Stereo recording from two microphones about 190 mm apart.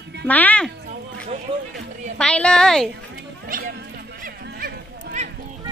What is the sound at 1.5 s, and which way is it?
Speech, 25° right (ahead or behind).